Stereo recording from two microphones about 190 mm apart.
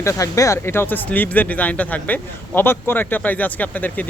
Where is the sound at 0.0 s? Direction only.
15° left (ahead or behind).